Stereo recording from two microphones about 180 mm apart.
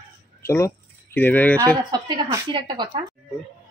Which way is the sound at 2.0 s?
25° right (ahead or behind).